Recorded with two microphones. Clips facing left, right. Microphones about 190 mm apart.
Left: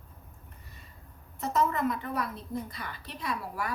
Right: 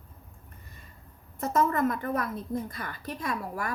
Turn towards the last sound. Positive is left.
turn(degrees=-50)  # may be behind; listen again after turning